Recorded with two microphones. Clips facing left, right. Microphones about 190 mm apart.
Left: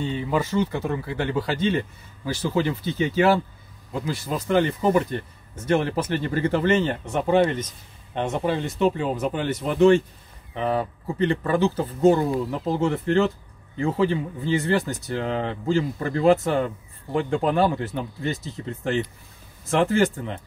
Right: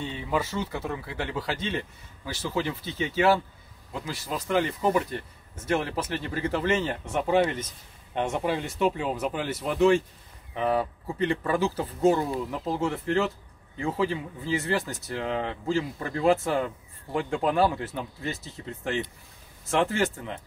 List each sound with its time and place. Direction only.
0.0 s speech: centre (ahead or behind)